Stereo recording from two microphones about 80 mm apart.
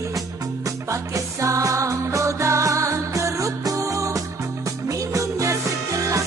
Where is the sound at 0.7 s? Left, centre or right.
Right.